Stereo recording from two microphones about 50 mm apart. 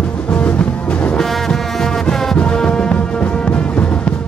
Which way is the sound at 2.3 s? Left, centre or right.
Centre.